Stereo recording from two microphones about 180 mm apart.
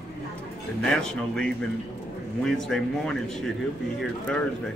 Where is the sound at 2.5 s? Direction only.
Centre (ahead or behind).